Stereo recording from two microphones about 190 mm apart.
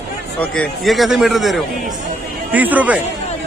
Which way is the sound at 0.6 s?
Centre (ahead or behind).